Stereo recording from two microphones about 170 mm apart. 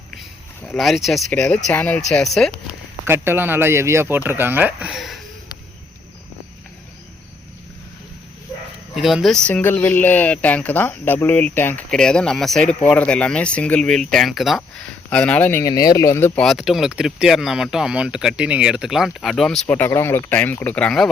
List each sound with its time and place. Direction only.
0.2 s speech: 5° left (ahead or behind)
3.1 s speech: 15° right (ahead or behind)
9.0 s speech: centre (ahead or behind)